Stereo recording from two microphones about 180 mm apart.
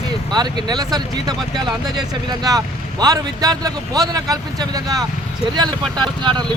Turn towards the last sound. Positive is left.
turn(degrees=-25)  # may be behind; listen again after turning